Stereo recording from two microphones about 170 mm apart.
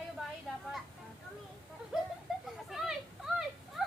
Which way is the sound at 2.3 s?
Centre (ahead or behind).